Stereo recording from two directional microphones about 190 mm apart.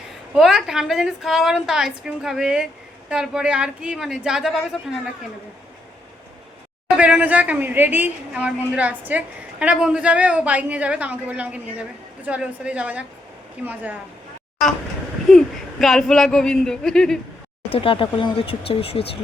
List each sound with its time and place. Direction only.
0.3 s a woman's voice: centre (ahead or behind)
6.9 s a woman's voice: 5° right (ahead or behind)
15.3 s speech: centre (ahead or behind)
17.7 s speech: 30° left (ahead or behind)